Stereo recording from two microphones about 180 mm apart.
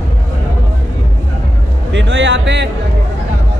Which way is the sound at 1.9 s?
90° right.